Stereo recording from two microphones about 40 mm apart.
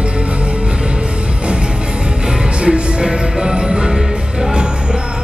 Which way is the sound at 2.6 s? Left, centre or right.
Right.